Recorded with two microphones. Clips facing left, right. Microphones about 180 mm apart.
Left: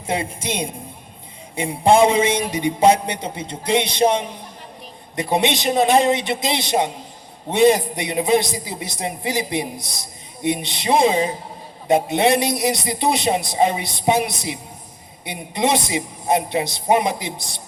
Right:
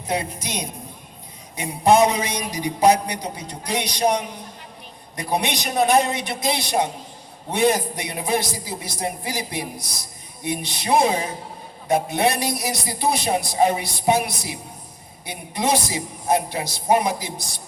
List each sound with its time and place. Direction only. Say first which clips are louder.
0.1 s a man's voice: left 2 dB; 25° left (ahead or behind)